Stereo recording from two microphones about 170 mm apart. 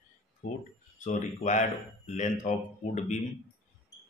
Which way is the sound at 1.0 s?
45° left (ahead or behind).